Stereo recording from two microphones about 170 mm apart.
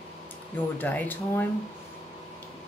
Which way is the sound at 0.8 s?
10° left (ahead or behind).